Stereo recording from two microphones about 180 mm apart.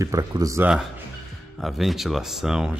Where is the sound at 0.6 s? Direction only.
5° right (ahead or behind).